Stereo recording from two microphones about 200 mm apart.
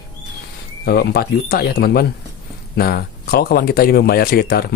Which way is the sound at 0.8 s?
50° left (ahead or behind).